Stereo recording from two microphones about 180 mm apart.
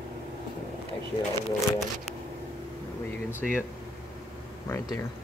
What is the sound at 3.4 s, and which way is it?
Speech, centre (ahead or behind).